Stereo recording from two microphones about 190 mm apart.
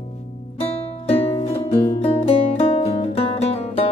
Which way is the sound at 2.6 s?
30° left (ahead or behind).